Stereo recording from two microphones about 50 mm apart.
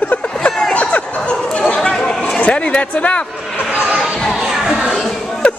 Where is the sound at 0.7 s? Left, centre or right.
Left.